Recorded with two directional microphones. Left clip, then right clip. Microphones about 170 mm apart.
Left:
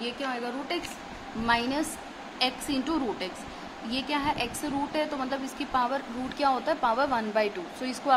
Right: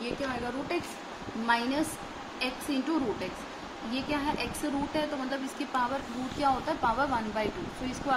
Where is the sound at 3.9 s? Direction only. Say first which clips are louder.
Left 3 dB; 30° left (ahead or behind).